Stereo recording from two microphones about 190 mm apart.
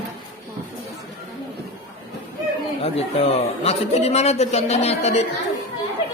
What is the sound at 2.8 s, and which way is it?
A man's voice, 30° left (ahead or behind).